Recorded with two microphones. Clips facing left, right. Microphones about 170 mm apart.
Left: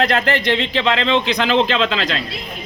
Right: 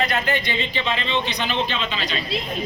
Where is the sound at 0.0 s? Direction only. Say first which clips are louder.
Left 5 dB; 90° left.